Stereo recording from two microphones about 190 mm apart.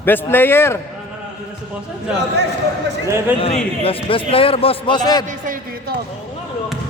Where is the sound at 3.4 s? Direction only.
30° left (ahead or behind).